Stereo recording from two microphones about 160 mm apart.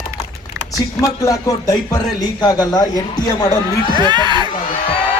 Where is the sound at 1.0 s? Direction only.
20° left (ahead or behind).